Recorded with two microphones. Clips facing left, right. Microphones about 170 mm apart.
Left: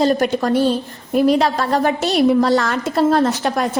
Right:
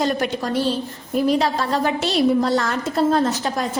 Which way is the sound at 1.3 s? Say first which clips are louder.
Left 3 dB; 55° left (ahead or behind).